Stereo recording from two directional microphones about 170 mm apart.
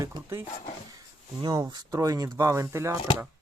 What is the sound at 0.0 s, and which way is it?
Speech, 15° right (ahead or behind).